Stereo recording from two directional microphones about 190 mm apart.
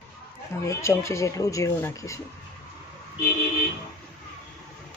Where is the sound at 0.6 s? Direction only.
15° left (ahead or behind).